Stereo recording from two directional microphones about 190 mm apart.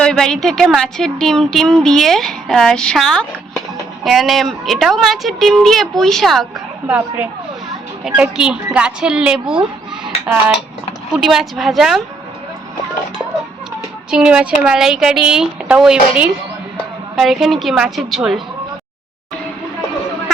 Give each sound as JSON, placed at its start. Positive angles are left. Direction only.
{"t": 0.0, "sound": "speech", "side_deg": 5}
{"t": 11.1, "sound": "speech", "side_deg": 0}
{"t": 14.1, "sound": "speech", "side_deg": -5}